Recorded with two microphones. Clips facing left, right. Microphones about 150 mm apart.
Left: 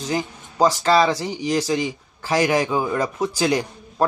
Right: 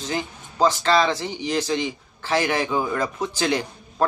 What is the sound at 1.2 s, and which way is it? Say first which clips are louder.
Speech: left 2 dB; 35° left (ahead or behind).